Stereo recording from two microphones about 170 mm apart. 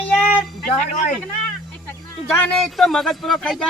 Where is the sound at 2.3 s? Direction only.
Centre (ahead or behind).